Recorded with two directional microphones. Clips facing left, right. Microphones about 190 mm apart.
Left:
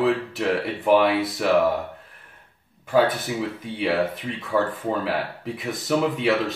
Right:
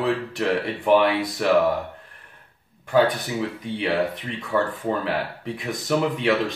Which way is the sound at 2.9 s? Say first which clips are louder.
Even; centre (ahead or behind).